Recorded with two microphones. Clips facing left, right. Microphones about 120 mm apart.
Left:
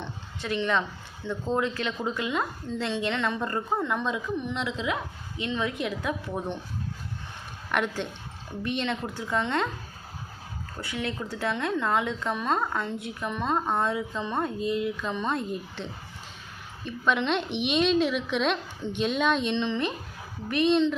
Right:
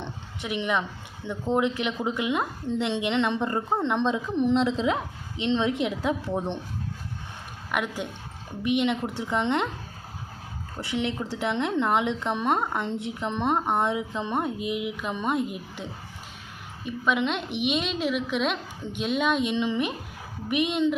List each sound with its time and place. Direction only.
0.0 s a woman's voice: 15° right (ahead or behind)
7.7 s a woman's voice: 5° right (ahead or behind)
10.8 s a woman's voice: 25° right (ahead or behind)